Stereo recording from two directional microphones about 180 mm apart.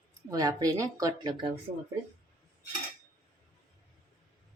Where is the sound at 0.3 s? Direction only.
20° right (ahead or behind).